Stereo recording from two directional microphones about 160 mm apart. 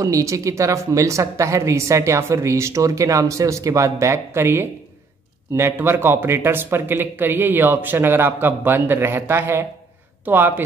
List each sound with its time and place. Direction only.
0.0 s a woman's voice: 20° right (ahead or behind)